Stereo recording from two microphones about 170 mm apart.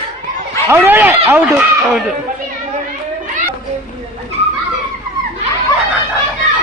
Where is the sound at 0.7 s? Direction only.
10° right (ahead or behind).